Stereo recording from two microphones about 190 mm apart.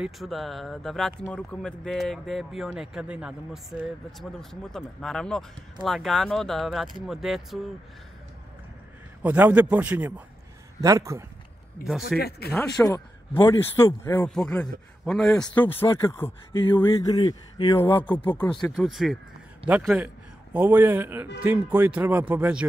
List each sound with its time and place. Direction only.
0.0 s speech: centre (ahead or behind)
9.2 s speech: 10° right (ahead or behind)
11.8 s speech: 5° right (ahead or behind)
12.2 s speech: 55° left (ahead or behind)
12.8 s speech: 15° left (ahead or behind); by 22.7 s 5° right (ahead or behind)